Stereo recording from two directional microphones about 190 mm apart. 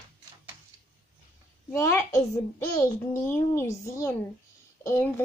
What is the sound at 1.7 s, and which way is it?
Speech, 15° left (ahead or behind).